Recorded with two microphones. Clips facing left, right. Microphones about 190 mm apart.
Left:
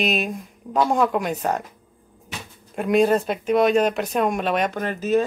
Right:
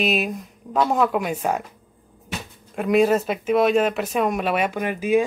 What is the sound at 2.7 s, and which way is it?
Speech, centre (ahead or behind).